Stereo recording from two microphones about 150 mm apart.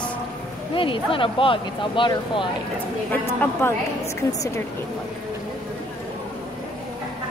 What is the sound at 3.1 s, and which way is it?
Speech, 10° left (ahead or behind).